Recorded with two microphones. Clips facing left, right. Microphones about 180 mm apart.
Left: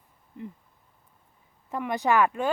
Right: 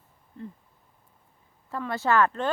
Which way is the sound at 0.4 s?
15° left (ahead or behind).